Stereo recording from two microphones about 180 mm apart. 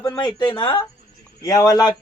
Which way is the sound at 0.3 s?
25° left (ahead or behind).